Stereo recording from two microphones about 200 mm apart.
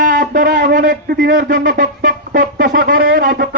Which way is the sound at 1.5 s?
45° right (ahead or behind).